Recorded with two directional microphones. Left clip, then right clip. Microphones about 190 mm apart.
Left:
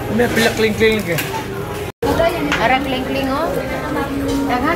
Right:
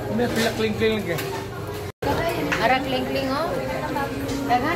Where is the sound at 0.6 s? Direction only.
15° left (ahead or behind).